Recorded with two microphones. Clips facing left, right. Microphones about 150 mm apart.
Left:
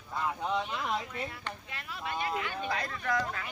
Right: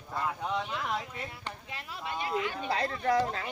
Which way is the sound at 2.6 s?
30° right (ahead or behind).